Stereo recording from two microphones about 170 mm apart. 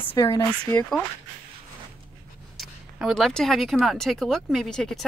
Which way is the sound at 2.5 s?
Centre (ahead or behind).